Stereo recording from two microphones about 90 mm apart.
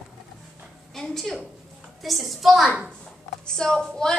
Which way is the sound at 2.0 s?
Centre (ahead or behind).